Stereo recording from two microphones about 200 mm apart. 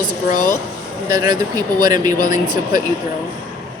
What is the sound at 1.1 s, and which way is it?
Speech, 20° right (ahead or behind).